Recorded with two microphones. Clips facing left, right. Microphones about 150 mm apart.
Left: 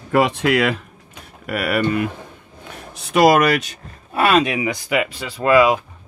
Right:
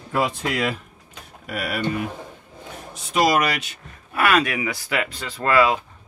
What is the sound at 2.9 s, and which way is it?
Speech, 60° left (ahead or behind).